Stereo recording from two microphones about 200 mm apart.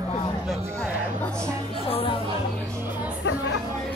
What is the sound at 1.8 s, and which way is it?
Speech, 25° left (ahead or behind).